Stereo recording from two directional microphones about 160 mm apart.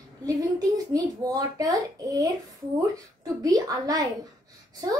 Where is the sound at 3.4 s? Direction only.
20° right (ahead or behind).